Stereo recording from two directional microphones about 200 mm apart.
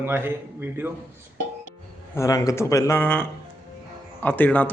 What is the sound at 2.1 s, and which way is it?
A man's voice, 15° left (ahead or behind).